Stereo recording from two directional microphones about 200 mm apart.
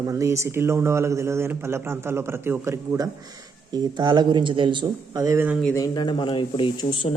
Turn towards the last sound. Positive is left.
turn(degrees=25)  # may be behind; listen again after turning